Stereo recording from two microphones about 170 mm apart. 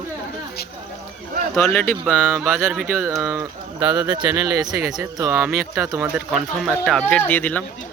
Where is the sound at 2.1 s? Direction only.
10° right (ahead or behind).